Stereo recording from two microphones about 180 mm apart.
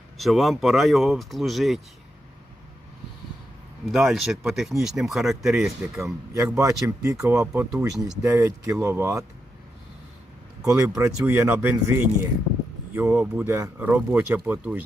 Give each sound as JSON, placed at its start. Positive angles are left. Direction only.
{"t": 0.2, "sound": "speech", "side_deg": 0}
{"t": 3.9, "sound": "speech", "side_deg": 0}
{"t": 6.3, "sound": "speech", "side_deg": -15}
{"t": 7.9, "sound": "speech", "side_deg": 0}
{"t": 8.2, "sound": "speech", "side_deg": -15}
{"t": 10.7, "sound": "speech", "side_deg": -15}